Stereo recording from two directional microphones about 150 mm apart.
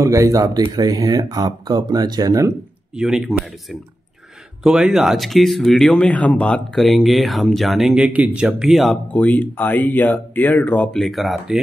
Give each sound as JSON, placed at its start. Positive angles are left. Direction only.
{"t": 0.0, "sound": "speech", "side_deg": -20}
{"t": 3.0, "sound": "speech", "side_deg": -5}
{"t": 4.6, "sound": "speech", "side_deg": -5}